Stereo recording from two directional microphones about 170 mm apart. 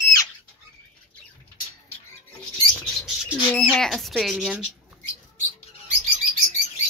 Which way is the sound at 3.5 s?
5° left (ahead or behind).